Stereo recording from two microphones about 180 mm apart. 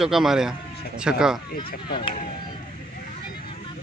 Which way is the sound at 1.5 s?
25° left (ahead or behind).